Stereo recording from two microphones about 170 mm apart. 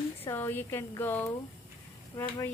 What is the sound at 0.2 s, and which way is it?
Speech, 15° left (ahead or behind).